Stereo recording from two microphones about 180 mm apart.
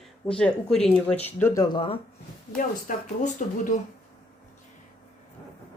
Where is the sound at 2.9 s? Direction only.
50° left (ahead or behind).